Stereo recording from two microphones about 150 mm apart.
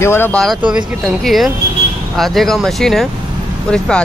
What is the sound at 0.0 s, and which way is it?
Speech, 15° left (ahead or behind).